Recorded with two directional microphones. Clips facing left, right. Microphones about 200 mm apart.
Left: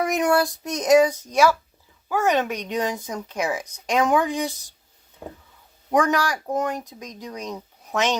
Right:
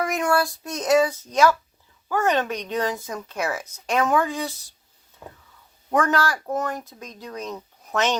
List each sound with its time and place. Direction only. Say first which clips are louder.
0.0 s speech: left 2 dB; 20° left (ahead or behind)
5.9 s speech: left 1 dB; 15° left (ahead or behind)